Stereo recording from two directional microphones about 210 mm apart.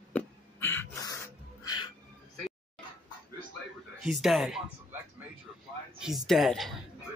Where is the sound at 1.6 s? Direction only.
20° left (ahead or behind).